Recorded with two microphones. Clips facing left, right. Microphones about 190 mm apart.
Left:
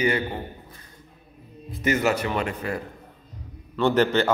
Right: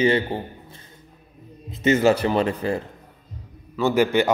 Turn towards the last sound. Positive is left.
turn(degrees=-10)  # may be behind; listen again after turning